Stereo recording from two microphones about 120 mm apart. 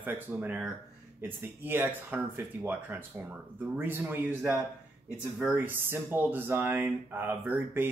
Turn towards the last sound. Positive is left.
turn(degrees=-20)  # may be behind; listen again after turning